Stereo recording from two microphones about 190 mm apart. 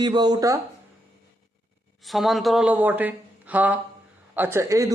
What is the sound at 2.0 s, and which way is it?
A man's voice, centre (ahead or behind).